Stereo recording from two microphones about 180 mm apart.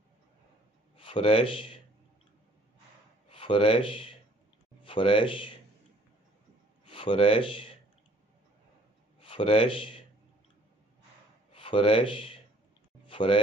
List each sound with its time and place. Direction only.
0.9 s a man's voice: 30° left (ahead or behind)
3.3 s speech: 30° left (ahead or behind)
6.9 s speech: 30° left (ahead or behind)
9.2 s a man's voice: 30° left (ahead or behind)
11.5 s speech: 30° left (ahead or behind)
13.0 s a sound: 30° left (ahead or behind)